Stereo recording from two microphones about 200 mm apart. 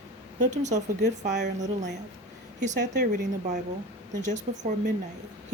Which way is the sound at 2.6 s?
40° right (ahead or behind).